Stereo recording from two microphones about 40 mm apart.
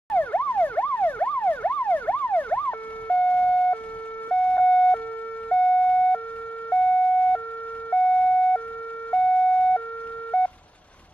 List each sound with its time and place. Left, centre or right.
0.1 s emergency vehicle: left
4.3 s siren: left
10.3 s telephone dialing: left